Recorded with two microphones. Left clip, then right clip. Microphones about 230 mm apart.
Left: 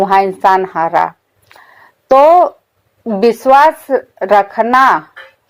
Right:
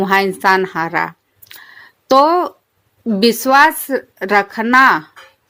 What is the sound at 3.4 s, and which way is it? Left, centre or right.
A woman's voice, right.